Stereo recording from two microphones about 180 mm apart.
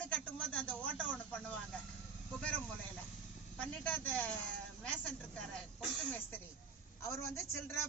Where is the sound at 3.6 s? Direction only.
10° left (ahead or behind).